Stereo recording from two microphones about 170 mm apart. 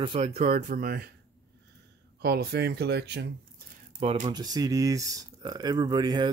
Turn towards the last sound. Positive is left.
turn(degrees=-25)  # may be behind; listen again after turning